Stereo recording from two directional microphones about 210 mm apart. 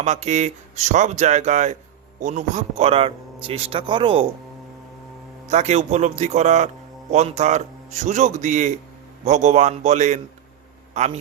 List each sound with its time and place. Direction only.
0.0 s a man's voice: 30° right (ahead or behind)
5.5 s a man's voice: 30° right (ahead or behind)